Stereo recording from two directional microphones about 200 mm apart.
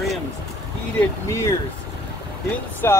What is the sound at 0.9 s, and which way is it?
Speech, 15° left (ahead or behind).